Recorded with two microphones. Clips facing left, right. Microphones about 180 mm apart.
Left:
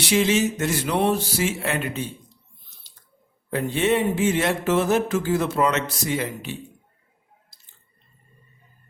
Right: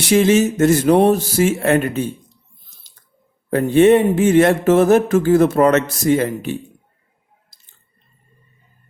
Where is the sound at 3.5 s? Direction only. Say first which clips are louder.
Right 10 dB; 50° right (ahead or behind).